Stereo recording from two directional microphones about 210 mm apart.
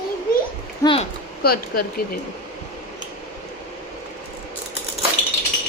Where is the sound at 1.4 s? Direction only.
45° left (ahead or behind).